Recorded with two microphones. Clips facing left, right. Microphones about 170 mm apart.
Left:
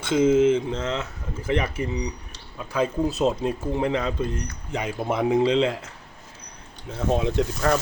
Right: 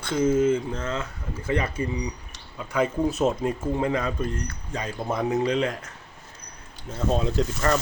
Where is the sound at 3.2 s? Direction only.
20° left (ahead or behind).